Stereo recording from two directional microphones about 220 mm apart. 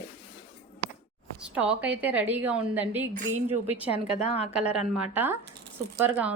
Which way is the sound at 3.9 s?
30° left (ahead or behind).